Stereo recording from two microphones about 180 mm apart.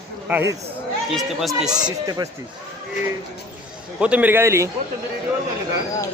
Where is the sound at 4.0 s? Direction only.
10° right (ahead or behind).